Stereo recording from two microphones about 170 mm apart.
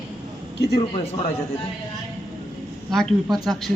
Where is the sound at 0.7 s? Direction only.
35° left (ahead or behind).